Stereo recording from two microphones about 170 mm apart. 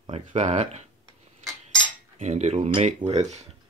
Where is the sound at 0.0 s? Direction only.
30° right (ahead or behind).